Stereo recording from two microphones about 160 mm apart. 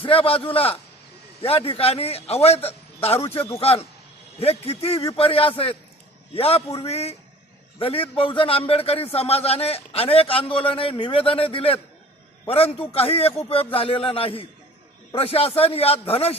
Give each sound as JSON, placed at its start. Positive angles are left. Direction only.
{"t": 0.0, "sound": "a man's voice", "side_deg": 35}